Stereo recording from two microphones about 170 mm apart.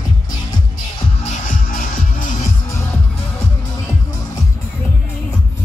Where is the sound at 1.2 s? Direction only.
50° left (ahead or behind).